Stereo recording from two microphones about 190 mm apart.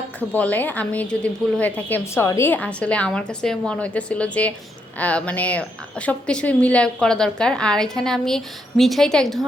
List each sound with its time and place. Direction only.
0.2 s a woman's voice: 10° left (ahead or behind)